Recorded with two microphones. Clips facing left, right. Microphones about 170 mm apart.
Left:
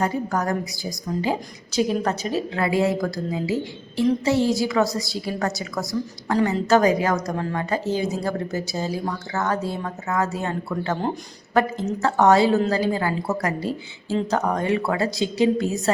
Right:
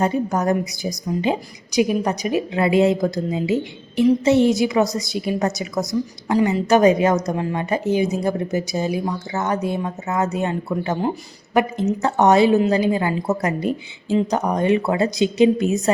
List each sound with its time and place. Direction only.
0.0 s a woman's voice: 20° right (ahead or behind)
11.0 s speech: 5° right (ahead or behind)
11.9 s a woman's voice: 20° right (ahead or behind)